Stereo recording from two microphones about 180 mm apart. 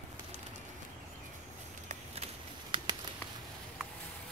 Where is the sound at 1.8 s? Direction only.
35° right (ahead or behind).